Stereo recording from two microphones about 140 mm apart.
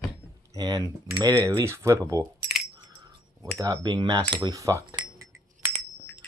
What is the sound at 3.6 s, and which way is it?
Speech, 25° right (ahead or behind).